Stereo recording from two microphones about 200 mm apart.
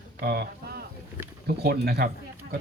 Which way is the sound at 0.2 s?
50° right (ahead or behind).